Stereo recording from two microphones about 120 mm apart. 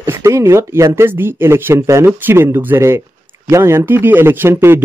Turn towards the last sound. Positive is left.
turn(degrees=-20)  # may be behind; listen again after turning